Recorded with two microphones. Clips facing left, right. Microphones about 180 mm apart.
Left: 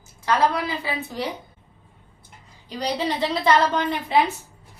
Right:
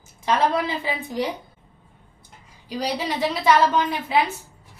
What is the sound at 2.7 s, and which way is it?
A woman's voice, 10° right (ahead or behind).